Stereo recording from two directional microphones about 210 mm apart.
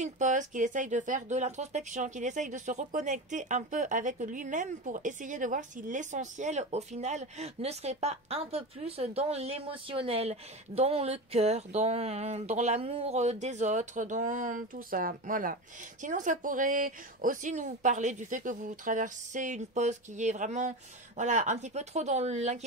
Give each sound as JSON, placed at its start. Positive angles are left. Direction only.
{"t": 0.0, "sound": "speech", "side_deg": -35}